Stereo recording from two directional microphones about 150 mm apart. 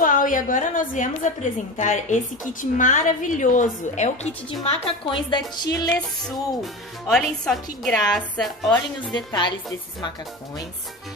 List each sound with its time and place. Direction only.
0.0 s a woman's voice: 65° left (ahead or behind); by 5.9 s 30° left (ahead or behind)
6.2 s speech: centre (ahead or behind)
9.1 s a woman's voice: 30° left (ahead or behind)